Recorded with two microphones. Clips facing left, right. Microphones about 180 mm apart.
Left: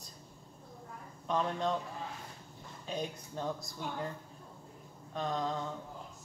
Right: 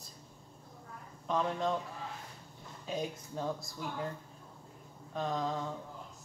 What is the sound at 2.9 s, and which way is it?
Speech, 5° right (ahead or behind).